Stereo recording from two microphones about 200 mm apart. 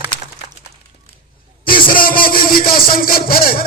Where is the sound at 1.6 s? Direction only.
45° left (ahead or behind).